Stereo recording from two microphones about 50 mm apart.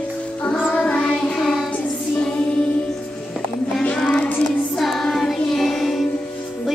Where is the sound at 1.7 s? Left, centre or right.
Left.